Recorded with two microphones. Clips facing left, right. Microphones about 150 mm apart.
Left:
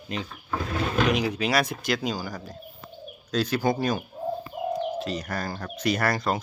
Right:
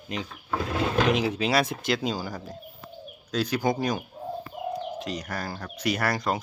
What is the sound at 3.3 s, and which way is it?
Speech, 10° right (ahead or behind).